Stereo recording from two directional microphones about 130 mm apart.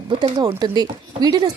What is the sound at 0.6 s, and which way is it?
Speech, 30° right (ahead or behind).